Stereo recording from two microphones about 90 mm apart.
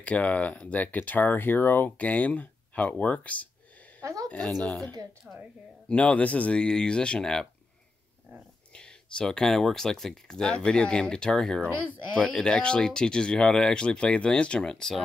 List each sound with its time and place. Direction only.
0.0 s speech: 15° left (ahead or behind)
4.0 s a sound: 40° right (ahead or behind)
4.6 s speech: 15° left (ahead or behind)
5.2 s a woman's voice: 20° right (ahead or behind)
5.9 s speech: 15° left (ahead or behind)
8.7 s speech: 10° left (ahead or behind)